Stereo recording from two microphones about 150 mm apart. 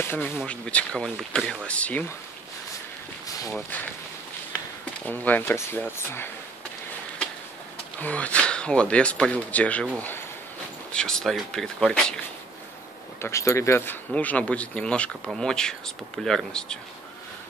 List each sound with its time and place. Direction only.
0.0 s speech: 15° left (ahead or behind)
3.3 s a sound: 25° left (ahead or behind)
5.0 s speech: 10° left (ahead or behind)
8.0 s speech: 10° left (ahead or behind)
13.2 s speech: 20° left (ahead or behind); by 16.7 s 5° left (ahead or behind)